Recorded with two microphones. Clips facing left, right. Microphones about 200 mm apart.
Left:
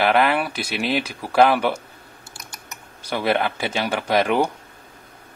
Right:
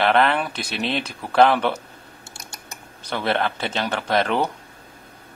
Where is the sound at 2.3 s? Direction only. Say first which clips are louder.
Even; 30° right (ahead or behind).